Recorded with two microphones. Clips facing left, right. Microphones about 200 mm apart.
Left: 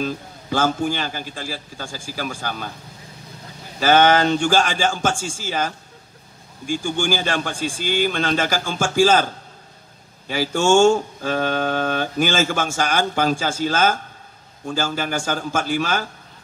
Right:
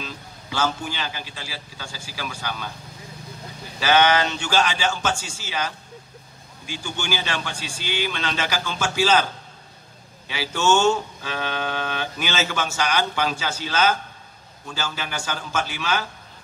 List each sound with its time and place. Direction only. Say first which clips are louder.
0.0 s speech: left 10 dB; 50° left (ahead or behind)
3.8 s speech: left 4 dB; 50° left (ahead or behind)